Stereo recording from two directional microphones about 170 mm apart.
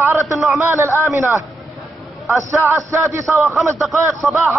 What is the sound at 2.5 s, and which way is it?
A man's voice, 15° right (ahead or behind).